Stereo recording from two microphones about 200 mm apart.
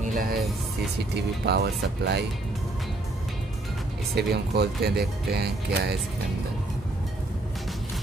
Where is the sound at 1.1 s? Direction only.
55° right (ahead or behind).